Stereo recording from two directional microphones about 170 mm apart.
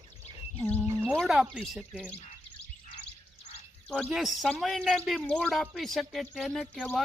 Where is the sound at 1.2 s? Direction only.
5° right (ahead or behind).